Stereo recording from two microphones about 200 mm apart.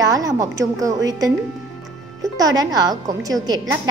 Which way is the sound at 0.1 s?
15° right (ahead or behind).